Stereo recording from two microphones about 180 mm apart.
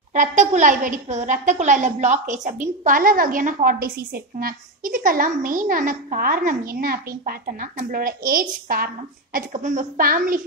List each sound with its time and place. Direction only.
0.1 s a woman's voice: 40° right (ahead or behind)